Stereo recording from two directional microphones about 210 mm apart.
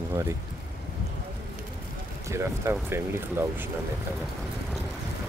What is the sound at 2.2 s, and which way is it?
Speech, 15° right (ahead or behind).